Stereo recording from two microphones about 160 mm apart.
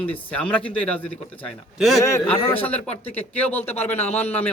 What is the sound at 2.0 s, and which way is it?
A man's voice, 20° left (ahead or behind).